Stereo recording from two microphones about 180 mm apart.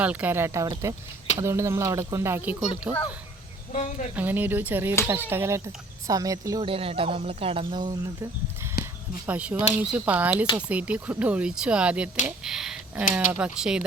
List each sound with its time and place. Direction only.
0.0 s speech: 10° right (ahead or behind)
3.7 s speech: 45° left (ahead or behind)
4.1 s speech: 10° right (ahead or behind)
6.7 s speech: 30° right (ahead or behind)
8.8 s a sound: 60° left (ahead or behind)
9.2 s speech: 10° right (ahead or behind)